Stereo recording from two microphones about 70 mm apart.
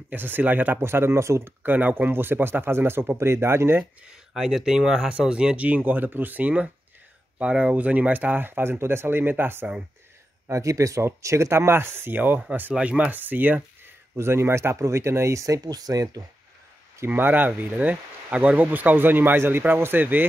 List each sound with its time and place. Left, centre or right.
0.1 s speech: right
0.7 s speech: right
1.7 s speech: right
4.4 s speech: centre; by 9.7 s right
10.5 s speech: right
14.1 s speech: right
17.0 s speech: right